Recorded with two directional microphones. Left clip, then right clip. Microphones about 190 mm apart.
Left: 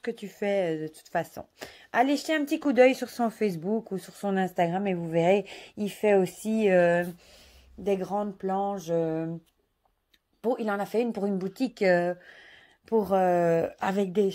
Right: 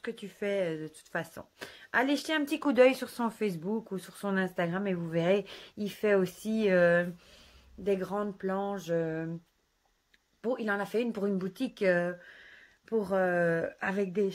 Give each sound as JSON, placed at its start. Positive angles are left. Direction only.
{"t": 0.0, "sound": "speech", "side_deg": 20}
{"t": 10.4, "sound": "speech", "side_deg": 20}